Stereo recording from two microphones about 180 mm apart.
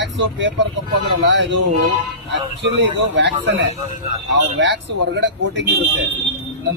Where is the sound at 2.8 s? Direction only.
90° right.